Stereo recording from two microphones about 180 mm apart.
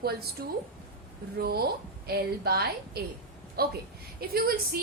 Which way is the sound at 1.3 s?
60° right (ahead or behind).